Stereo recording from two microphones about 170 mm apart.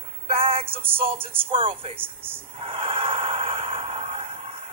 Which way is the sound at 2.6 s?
30° right (ahead or behind).